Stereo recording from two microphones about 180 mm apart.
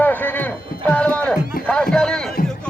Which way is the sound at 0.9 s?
10° left (ahead or behind).